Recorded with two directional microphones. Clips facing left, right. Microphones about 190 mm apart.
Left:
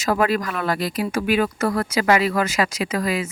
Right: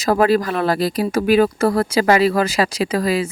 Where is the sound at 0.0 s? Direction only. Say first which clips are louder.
Right 5 dB; 35° right (ahead or behind).